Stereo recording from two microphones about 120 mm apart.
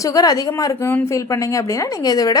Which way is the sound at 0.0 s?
30° left (ahead or behind).